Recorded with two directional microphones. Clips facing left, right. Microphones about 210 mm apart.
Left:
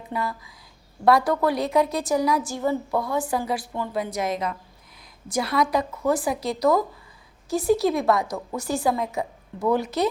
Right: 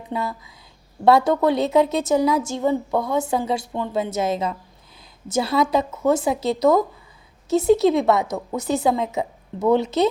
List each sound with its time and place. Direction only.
0.1 s a woman's voice: 25° right (ahead or behind)